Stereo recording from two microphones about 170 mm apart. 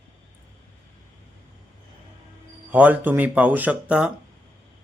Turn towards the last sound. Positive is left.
turn(degrees=-5)  # may be behind; listen again after turning